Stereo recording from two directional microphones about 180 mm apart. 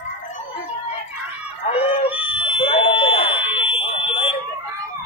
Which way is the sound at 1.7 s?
35° left (ahead or behind).